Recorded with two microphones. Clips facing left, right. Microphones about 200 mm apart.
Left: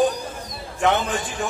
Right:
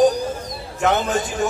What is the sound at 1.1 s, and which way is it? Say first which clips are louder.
Speech: right 5 dB; 45° right (ahead or behind).